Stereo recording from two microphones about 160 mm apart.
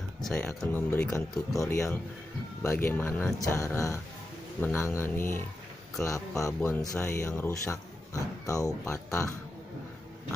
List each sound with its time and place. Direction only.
0.2 s speech: 5° left (ahead or behind)